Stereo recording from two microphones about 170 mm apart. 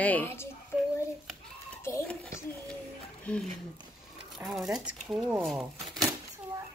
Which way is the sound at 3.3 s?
5° left (ahead or behind).